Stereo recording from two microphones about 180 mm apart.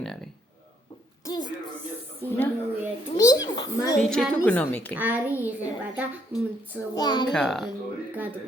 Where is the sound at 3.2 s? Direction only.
20° left (ahead or behind).